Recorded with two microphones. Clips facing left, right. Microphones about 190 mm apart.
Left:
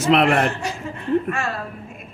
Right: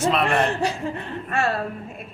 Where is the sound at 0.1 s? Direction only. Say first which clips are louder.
Left 8 dB; 80° left.